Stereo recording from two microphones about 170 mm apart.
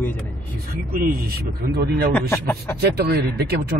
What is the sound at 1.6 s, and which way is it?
Speech, 70° right (ahead or behind).